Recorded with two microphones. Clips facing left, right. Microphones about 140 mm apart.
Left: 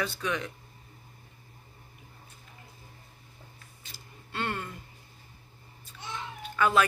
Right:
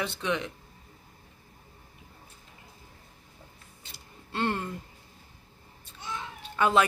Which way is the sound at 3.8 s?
25° right (ahead or behind).